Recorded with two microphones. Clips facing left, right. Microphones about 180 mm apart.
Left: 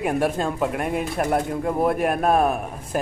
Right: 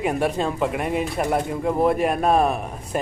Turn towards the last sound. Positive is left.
turn(degrees=0)  # may be behind; listen again after turning